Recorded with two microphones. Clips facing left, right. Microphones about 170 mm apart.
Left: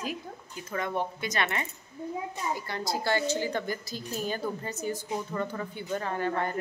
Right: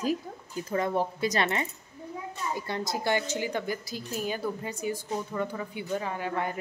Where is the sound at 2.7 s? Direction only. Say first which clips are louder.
Right 1 dB; 20° right (ahead or behind).